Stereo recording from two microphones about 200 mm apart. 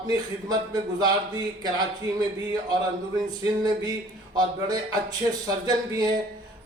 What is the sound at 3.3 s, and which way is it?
A man's voice, 20° right (ahead or behind).